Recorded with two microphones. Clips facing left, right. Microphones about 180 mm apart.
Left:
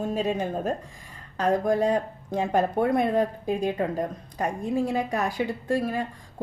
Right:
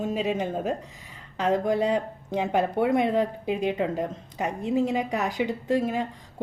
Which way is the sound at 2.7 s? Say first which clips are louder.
Right 1 dB; 15° right (ahead or behind).